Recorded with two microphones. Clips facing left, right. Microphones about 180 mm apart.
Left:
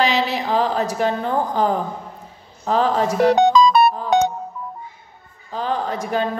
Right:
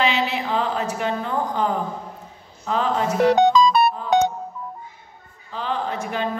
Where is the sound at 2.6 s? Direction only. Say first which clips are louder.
Left 5 dB; 35° left (ahead or behind).